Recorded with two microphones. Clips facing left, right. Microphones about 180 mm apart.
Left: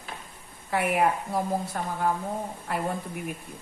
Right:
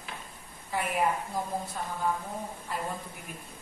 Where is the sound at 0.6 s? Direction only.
70° left (ahead or behind).